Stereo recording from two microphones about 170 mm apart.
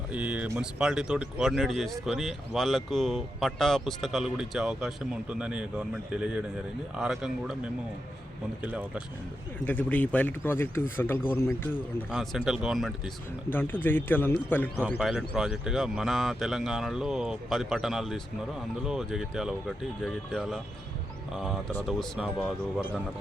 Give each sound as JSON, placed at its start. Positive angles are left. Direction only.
{"t": 0.1, "sound": "speech", "side_deg": -10}
{"t": 9.6, "sound": "speech", "side_deg": 10}
{"t": 12.1, "sound": "speech", "side_deg": 0}
{"t": 13.5, "sound": "speech", "side_deg": 10}
{"t": 14.8, "sound": "speech", "side_deg": -5}
{"t": 21.8, "sound": "speech", "side_deg": 0}